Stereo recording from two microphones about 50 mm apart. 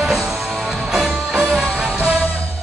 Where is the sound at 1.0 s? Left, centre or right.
Centre.